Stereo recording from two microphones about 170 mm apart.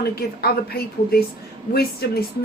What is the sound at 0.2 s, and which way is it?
A woman's voice, 65° left (ahead or behind).